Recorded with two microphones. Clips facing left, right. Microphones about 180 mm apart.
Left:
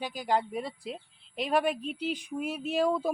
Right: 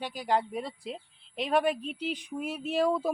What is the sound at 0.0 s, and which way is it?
Speech, 5° left (ahead or behind).